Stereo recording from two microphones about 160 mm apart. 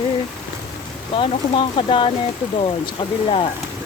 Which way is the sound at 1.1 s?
30° left (ahead or behind).